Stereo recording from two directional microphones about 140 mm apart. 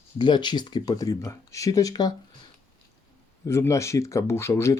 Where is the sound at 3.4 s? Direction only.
20° left (ahead or behind).